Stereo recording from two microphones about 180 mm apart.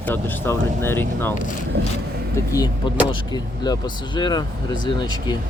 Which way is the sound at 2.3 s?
15° left (ahead or behind).